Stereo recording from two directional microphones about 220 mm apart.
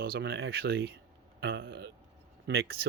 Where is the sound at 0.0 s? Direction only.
45° right (ahead or behind).